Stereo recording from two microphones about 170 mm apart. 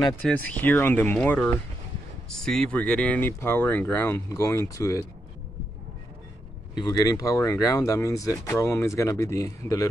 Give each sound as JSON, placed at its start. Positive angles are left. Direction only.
{"t": 0.2, "sound": "speech", "side_deg": 5}
{"t": 6.7, "sound": "speech", "side_deg": 20}